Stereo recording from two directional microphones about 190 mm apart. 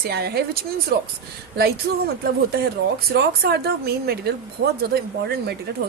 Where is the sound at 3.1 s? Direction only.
60° right (ahead or behind).